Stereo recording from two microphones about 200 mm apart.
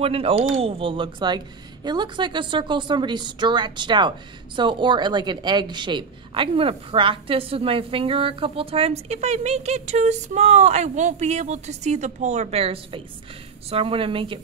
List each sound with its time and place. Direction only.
0.0 s a woman's voice: 30° right (ahead or behind)